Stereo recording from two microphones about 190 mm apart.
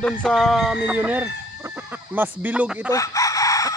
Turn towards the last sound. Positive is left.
turn(degrees=15)  # may be behind; listen again after turning